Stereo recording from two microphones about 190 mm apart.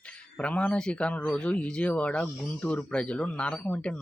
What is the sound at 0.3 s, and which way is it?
Speech, 5° left (ahead or behind).